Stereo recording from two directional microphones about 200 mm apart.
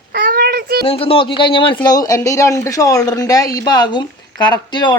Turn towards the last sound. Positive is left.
turn(degrees=20)  # may be behind; listen again after turning